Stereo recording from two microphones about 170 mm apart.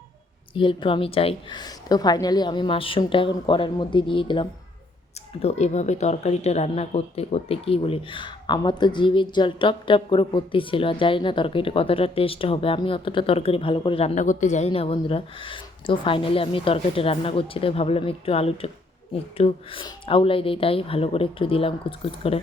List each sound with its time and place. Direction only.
0.5 s a woman's voice: 30° left (ahead or behind)
5.4 s speech: 40° left (ahead or behind)
14.7 s speech: 30° left (ahead or behind)